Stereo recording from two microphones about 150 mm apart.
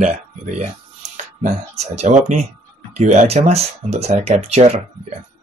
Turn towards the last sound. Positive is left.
turn(degrees=-45)  # may be behind; listen again after turning